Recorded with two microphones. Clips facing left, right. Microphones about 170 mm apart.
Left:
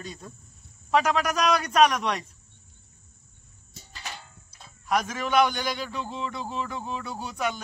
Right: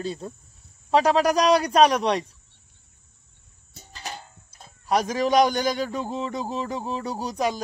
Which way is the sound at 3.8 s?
40° right (ahead or behind).